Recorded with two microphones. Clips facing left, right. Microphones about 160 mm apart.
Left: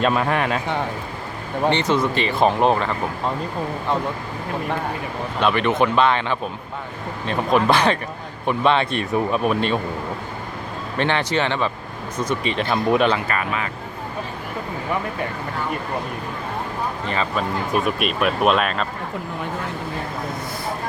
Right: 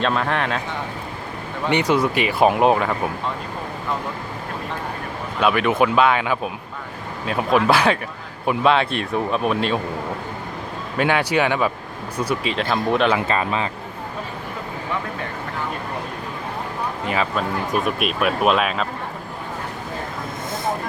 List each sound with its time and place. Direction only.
0.0 s speech: 5° left (ahead or behind)
1.7 s speech: 10° right (ahead or behind)
5.4 s speech: 5° right (ahead or behind)
10.9 s speech: 10° right (ahead or behind)
13.1 s speech: 25° right (ahead or behind)
17.1 s speech: centre (ahead or behind)